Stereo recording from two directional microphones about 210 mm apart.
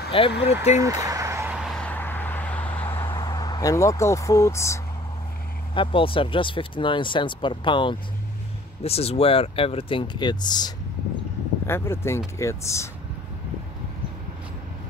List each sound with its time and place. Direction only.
0.1 s speech: 25° left (ahead or behind)
0.7 s a sound: 15° right (ahead or behind)
1.6 s vehicle: 5° left (ahead or behind)
5.8 s speech: 25° left (ahead or behind)